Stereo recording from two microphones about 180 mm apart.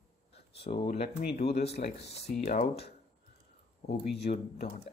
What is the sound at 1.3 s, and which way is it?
Speech, 35° left (ahead or behind).